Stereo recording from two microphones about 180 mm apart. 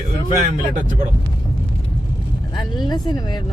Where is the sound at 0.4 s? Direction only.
45° right (ahead or behind).